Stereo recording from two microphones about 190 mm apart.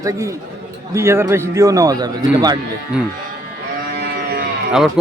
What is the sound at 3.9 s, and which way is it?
Livestock, 55° right (ahead or behind).